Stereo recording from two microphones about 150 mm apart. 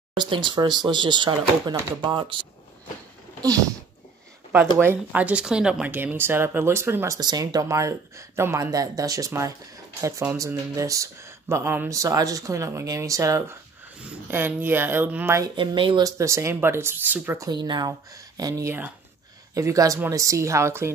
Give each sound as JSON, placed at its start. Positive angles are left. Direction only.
{"t": 0.1, "sound": "speech", "side_deg": -35}
{"t": 4.7, "sound": "speech", "side_deg": -10}
{"t": 7.2, "sound": "speech", "side_deg": -25}
{"t": 15.5, "sound": "speech", "side_deg": -35}
{"t": 17.5, "sound": "speech", "side_deg": -30}